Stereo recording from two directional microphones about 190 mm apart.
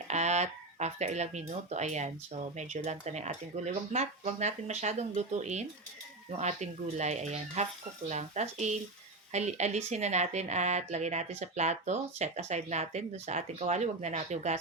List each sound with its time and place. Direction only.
0.1 s speech: 35° right (ahead or behind)